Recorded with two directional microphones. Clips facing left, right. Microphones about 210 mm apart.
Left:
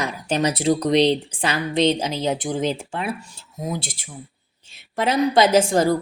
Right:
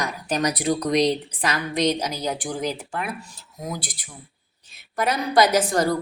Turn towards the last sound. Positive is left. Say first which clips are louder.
# left 4 dB
turn(degrees=25)  # may be behind; listen again after turning